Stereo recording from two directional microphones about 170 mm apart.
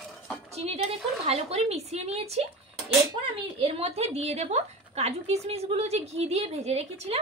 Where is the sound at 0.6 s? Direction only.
35° right (ahead or behind).